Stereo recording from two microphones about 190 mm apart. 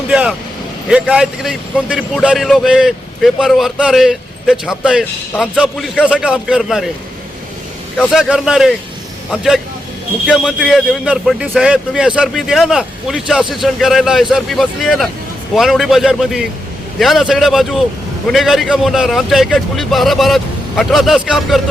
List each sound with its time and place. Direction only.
0.1 s a man's voice: 5° right (ahead or behind)
7.9 s a man's voice: centre (ahead or behind)